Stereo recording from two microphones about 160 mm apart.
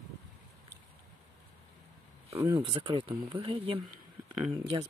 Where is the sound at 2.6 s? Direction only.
30° right (ahead or behind).